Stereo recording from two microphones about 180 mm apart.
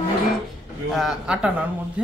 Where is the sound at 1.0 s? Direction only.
5° right (ahead or behind).